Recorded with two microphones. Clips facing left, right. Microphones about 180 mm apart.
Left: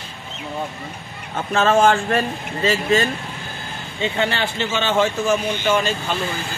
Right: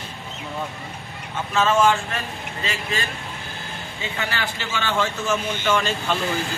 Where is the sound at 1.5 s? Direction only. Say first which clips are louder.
Left 3 dB; 55° left (ahead or behind).